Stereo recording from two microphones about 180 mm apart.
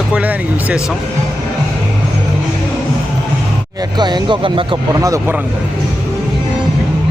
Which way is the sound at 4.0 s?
25° right (ahead or behind).